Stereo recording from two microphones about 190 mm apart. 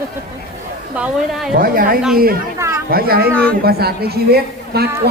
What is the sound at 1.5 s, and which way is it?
Speech, 50° right (ahead or behind).